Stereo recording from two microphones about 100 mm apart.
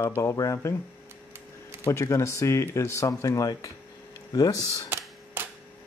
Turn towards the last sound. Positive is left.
turn(degrees=-25)  # may be behind; listen again after turning